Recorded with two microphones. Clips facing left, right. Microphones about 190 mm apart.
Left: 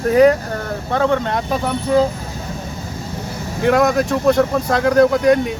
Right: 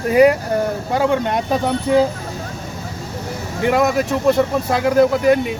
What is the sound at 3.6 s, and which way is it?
Speech, centre (ahead or behind).